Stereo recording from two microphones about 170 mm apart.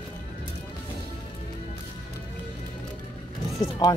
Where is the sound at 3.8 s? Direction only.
25° left (ahead or behind).